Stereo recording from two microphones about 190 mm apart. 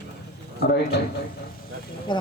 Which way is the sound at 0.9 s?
65° left (ahead or behind).